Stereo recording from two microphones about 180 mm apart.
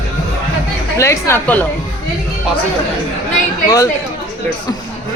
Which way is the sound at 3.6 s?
20° left (ahead or behind).